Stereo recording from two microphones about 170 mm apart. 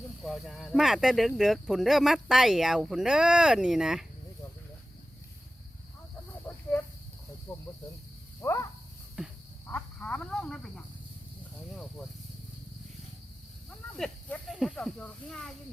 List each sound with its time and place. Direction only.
0.2 s speech: centre (ahead or behind)
7.5 s cricket: 10° left (ahead or behind)
8.4 s a sound: 15° left (ahead or behind)
9.2 s frog: 5° right (ahead or behind)
9.7 s cricket: 5° left (ahead or behind)
13.7 s snake: 5° left (ahead or behind)